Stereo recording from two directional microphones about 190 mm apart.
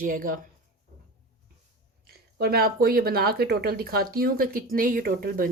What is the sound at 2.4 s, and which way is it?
Speech, 55° right (ahead or behind).